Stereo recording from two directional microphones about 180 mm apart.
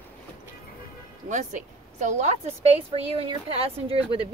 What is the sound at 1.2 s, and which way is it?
Speech, 40° right (ahead or behind).